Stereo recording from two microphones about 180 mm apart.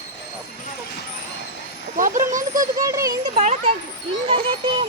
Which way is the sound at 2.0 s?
45° right (ahead or behind).